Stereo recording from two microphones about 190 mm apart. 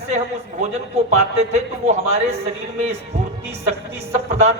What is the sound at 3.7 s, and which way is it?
Speech, 35° right (ahead or behind).